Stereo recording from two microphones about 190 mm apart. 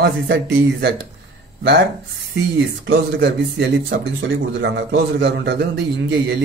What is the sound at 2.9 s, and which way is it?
Speech, 65° right (ahead or behind).